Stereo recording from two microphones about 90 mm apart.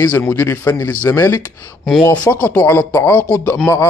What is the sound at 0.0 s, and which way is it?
A man's voice, 25° left (ahead or behind).